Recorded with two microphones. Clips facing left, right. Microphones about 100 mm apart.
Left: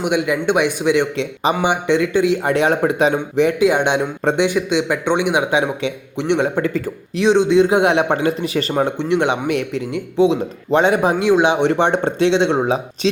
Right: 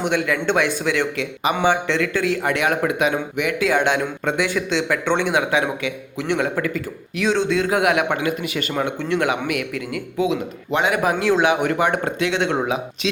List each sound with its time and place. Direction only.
0.0 s a man's voice: 15° left (ahead or behind)
3.6 s a man's voice: 20° left (ahead or behind)
4.2 s a man's voice: 30° left (ahead or behind)
4.4 s a man's voice: 15° left (ahead or behind); by 8.9 s 35° left (ahead or behind)
9.0 s a man's voice: 20° left (ahead or behind)
11.2 s a man's voice: 20° left (ahead or behind)
12.6 s a man's voice: 35° left (ahead or behind)